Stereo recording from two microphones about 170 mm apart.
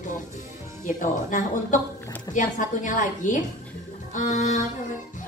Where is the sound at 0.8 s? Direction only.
50° left (ahead or behind).